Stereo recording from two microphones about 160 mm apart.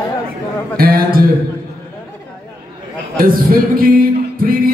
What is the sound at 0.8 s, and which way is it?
Speech, 65° right (ahead or behind).